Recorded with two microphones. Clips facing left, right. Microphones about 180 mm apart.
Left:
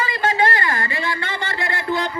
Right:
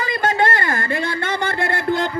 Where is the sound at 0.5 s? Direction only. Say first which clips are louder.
Right 2 dB; 50° right (ahead or behind).